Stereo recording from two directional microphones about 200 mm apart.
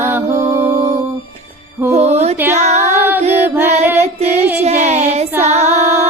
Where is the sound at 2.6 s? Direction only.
35° right (ahead or behind).